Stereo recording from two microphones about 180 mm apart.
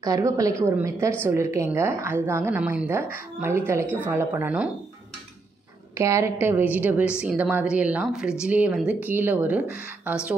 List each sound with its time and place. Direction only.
0.0 s a woman's voice: 20° right (ahead or behind)
5.9 s a woman's voice: 15° right (ahead or behind)